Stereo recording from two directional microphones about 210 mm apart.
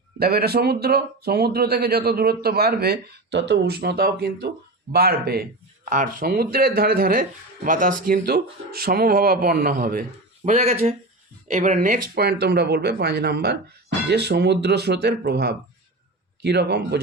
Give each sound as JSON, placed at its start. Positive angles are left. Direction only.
{"t": 0.2, "sound": "speech", "side_deg": -45}
{"t": 10.5, "sound": "speech", "side_deg": -30}